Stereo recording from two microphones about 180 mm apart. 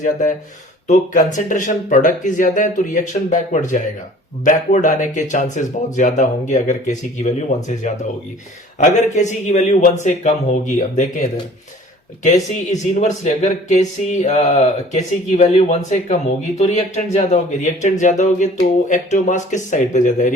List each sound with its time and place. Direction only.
0.9 s speech: 45° left (ahead or behind)
8.8 s speech: 40° left (ahead or behind)
12.7 s speech: 40° left (ahead or behind)